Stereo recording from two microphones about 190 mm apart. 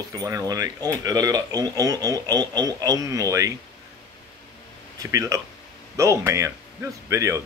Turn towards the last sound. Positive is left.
turn(degrees=-15)  # may be behind; listen again after turning